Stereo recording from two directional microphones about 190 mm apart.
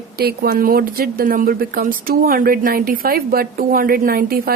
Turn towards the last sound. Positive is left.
turn(degrees=-50)  # may be behind; listen again after turning